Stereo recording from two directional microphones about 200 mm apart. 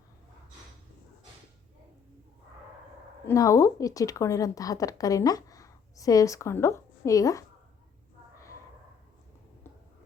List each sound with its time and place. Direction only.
3.2 s a woman's voice: 15° left (ahead or behind)